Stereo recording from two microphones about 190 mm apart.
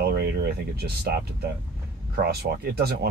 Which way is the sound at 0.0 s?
55° right (ahead or behind).